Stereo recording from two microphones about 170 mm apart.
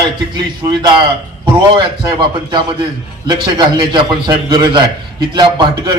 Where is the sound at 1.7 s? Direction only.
30° right (ahead or behind).